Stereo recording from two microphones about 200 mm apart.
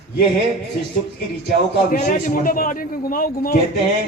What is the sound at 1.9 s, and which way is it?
A man's voice, 45° left (ahead or behind).